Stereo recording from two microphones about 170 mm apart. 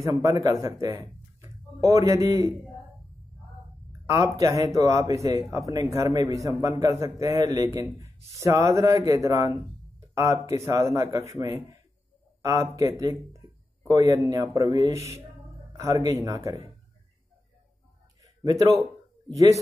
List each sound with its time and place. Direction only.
0.0 s speech: 20° right (ahead or behind)
4.0 s a man's voice: 20° right (ahead or behind)
18.2 s a sound: 20° right (ahead or behind)
19.3 s speech: 20° right (ahead or behind)